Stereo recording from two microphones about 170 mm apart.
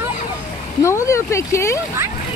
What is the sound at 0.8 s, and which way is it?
Speech, 15° left (ahead or behind).